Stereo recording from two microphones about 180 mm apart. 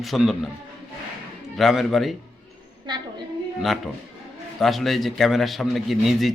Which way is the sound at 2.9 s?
25° right (ahead or behind).